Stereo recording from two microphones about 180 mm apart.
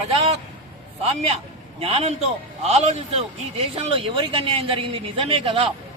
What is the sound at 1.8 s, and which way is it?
A man's voice, 35° right (ahead or behind).